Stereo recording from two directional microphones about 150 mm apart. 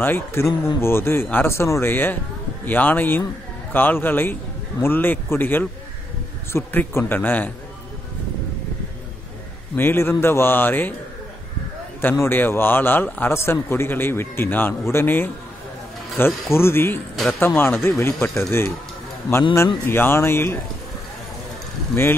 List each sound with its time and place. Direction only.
0.0 s speech: 15° left (ahead or behind)
9.8 s speech: 15° left (ahead or behind)
12.0 s speech: 15° left (ahead or behind)
19.5 s speech: 15° left (ahead or behind)